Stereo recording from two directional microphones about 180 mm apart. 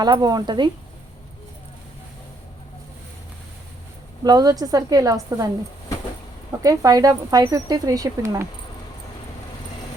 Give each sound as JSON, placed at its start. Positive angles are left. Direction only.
{"t": 0.0, "sound": "speech", "side_deg": -25}
{"t": 4.2, "sound": "speech", "side_deg": -20}
{"t": 6.6, "sound": "speech", "side_deg": -20}